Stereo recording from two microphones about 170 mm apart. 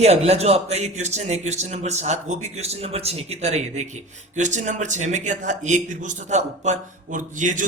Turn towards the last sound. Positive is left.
turn(degrees=-50)  # may be behind; listen again after turning